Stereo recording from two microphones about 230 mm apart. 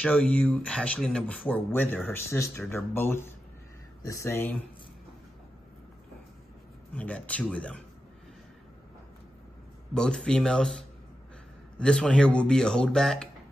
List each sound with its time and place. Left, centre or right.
0.0 s speech: centre
6.9 s speech: centre
9.9 s speech: centre
11.8 s speech: centre